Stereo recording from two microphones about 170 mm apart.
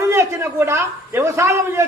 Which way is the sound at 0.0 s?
15° right (ahead or behind).